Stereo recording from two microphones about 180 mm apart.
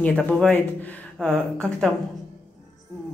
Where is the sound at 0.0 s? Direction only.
5° left (ahead or behind).